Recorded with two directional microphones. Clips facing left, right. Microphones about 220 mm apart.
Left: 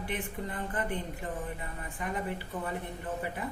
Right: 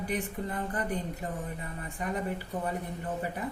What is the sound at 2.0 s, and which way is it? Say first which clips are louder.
Speech: right 2 dB; 40° right (ahead or behind).